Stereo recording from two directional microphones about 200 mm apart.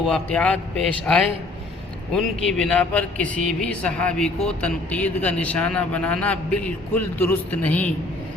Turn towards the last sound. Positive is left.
turn(degrees=10)  # may be behind; listen again after turning